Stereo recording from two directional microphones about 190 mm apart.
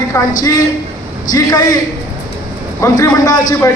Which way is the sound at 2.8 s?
15° left (ahead or behind).